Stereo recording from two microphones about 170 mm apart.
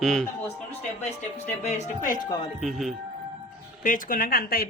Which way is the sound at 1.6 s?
40° left (ahead or behind).